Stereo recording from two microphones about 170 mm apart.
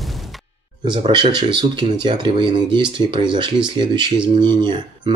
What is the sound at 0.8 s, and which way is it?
Speech, 30° right (ahead or behind).